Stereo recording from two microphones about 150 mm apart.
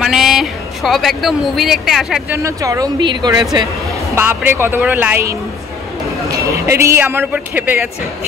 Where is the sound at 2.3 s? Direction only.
20° right (ahead or behind).